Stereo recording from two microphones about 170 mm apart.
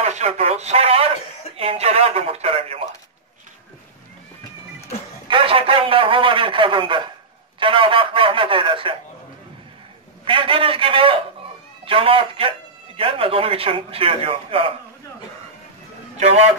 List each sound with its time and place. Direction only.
0.0 s radio: 40° right (ahead or behind)
1.6 s speech: 35° right (ahead or behind)
5.3 s a sound: 30° right (ahead or behind)
7.5 s speech: 30° right (ahead or behind)
10.2 s speech: 30° right (ahead or behind)
16.2 s speech: 40° right (ahead or behind)